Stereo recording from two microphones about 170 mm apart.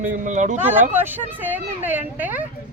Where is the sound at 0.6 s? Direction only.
10° right (ahead or behind).